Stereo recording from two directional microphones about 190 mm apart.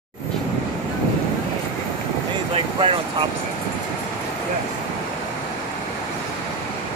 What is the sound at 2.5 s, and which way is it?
Speech, 25° right (ahead or behind).